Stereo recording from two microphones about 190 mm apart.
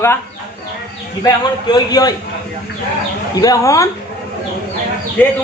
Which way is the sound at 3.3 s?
20° left (ahead or behind).